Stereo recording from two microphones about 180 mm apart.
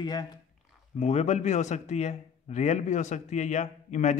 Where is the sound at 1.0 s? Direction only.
40° left (ahead or behind).